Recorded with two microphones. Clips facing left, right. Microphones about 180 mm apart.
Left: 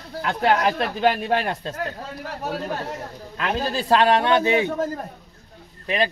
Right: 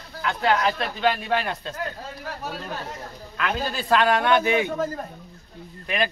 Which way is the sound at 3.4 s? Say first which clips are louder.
Left 3 dB; 35° left (ahead or behind).